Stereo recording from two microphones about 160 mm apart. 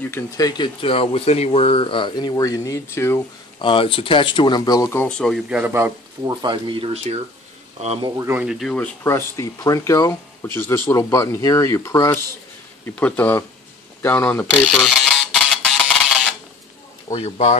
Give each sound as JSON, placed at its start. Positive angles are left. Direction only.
{"t": 0.1, "sound": "speech", "side_deg": 25}
{"t": 3.6, "sound": "speech", "side_deg": 35}
{"t": 5.5, "sound": "a man's voice", "side_deg": -15}
{"t": 6.4, "sound": "speech", "side_deg": -30}
{"t": 8.2, "sound": "speech", "side_deg": -10}
{"t": 12.8, "sound": "speech", "side_deg": 10}
{"t": 15.0, "sound": "a sound", "side_deg": 5}
{"t": 17.1, "sound": "speech", "side_deg": 40}